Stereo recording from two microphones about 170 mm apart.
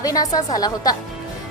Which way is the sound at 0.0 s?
20° left (ahead or behind).